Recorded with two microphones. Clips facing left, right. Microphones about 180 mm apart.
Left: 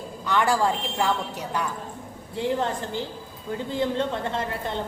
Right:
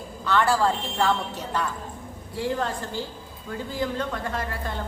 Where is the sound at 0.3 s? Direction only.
15° left (ahead or behind).